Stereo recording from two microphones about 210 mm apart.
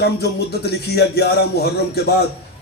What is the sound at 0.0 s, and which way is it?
Speech, 50° left (ahead or behind).